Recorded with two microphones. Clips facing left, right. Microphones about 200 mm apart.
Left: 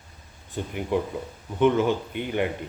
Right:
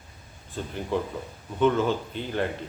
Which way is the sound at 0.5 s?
15° left (ahead or behind).